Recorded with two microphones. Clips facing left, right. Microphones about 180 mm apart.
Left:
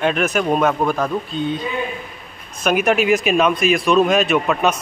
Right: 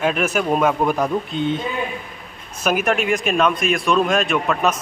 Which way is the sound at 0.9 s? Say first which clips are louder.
Even; 15° right (ahead or behind).